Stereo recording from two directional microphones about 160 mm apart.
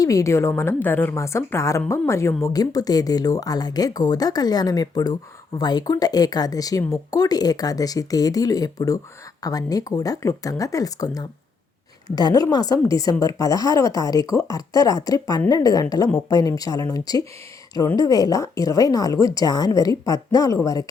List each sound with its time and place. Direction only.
0.0 s a woman's voice: 20° left (ahead or behind)